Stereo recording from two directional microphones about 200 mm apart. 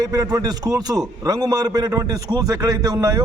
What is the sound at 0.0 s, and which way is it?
A man's voice, 20° right (ahead or behind).